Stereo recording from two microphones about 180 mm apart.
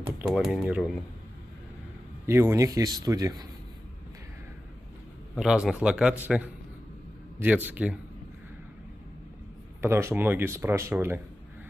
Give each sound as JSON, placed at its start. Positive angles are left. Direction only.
{"t": 0.3, "sound": "a man's voice", "side_deg": -5}
{"t": 2.2, "sound": "a man's voice", "side_deg": -15}
{"t": 5.3, "sound": "a man's voice", "side_deg": -5}
{"t": 9.8, "sound": "speech", "side_deg": -15}